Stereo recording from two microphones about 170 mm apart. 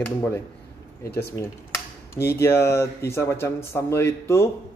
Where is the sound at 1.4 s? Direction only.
15° left (ahead or behind).